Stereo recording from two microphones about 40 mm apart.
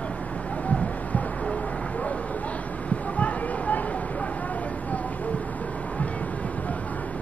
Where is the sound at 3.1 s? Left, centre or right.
Left.